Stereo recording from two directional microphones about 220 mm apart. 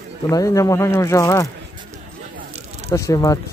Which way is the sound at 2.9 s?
15° left (ahead or behind).